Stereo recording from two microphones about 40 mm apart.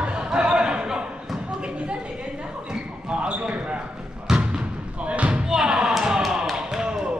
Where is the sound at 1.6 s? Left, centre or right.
Right.